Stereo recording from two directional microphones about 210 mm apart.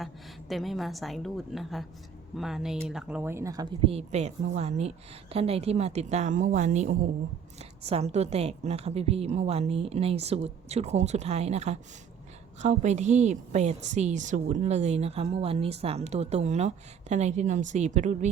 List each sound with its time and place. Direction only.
0.0 s a woman's voice: centre (ahead or behind); by 3.9 s 15° right (ahead or behind)
3.9 s a woman's voice: 30° right (ahead or behind)